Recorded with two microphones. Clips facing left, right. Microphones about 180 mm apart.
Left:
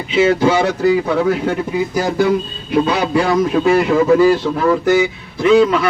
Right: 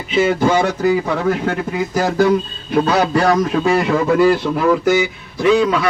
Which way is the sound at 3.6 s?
20° left (ahead or behind).